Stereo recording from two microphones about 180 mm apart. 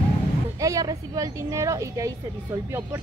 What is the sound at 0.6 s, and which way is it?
Speech, 20° right (ahead or behind).